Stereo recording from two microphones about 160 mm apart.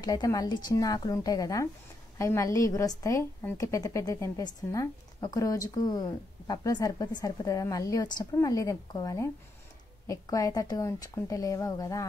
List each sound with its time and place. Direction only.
0.0 s a woman's voice: 25° left (ahead or behind)